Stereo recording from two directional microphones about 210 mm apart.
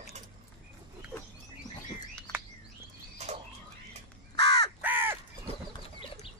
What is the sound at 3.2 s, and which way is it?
Bird, 30° right (ahead or behind).